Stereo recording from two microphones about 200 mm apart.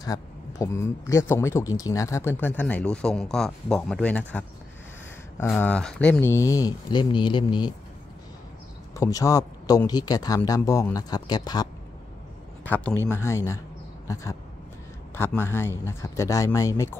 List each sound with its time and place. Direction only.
0.0 s speech: 15° left (ahead or behind)
8.9 s speech: 15° left (ahead or behind)
12.6 s speech: 10° left (ahead or behind)